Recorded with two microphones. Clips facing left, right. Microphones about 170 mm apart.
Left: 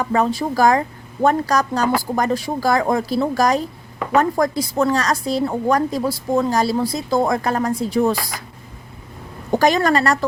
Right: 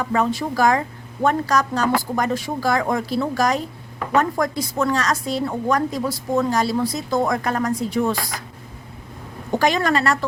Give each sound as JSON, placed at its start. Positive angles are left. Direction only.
{"t": 0.0, "sound": "a woman's voice", "side_deg": 35}
{"t": 9.6, "sound": "a woman's voice", "side_deg": 40}